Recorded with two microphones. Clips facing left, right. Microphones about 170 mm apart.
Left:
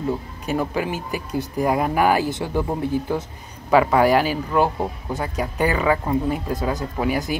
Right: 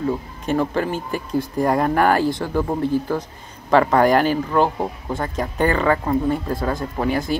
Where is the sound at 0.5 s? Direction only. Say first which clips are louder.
Right 3 dB; 10° left (ahead or behind).